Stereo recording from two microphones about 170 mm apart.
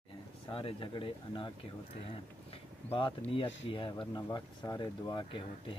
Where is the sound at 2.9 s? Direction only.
30° left (ahead or behind).